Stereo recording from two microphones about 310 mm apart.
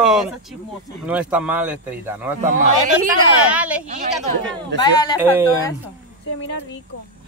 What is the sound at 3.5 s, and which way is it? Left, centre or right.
Speech, centre.